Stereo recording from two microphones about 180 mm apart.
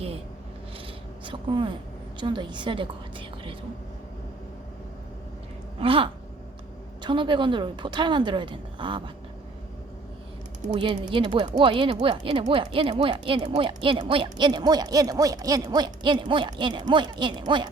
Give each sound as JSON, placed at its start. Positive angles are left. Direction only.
{"t": 1.2, "sound": "a woman's voice", "side_deg": -25}
{"t": 5.8, "sound": "speech", "side_deg": -30}
{"t": 10.7, "sound": "speech", "side_deg": -25}